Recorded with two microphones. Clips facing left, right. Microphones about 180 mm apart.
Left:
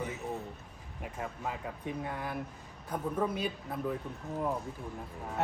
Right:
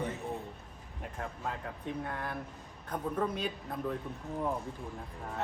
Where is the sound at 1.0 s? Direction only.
5° left (ahead or behind).